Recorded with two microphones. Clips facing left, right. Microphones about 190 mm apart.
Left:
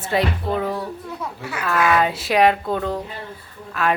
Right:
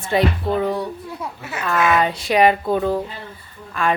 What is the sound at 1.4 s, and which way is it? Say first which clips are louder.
Speech: right 1 dB; 20° right (ahead or behind).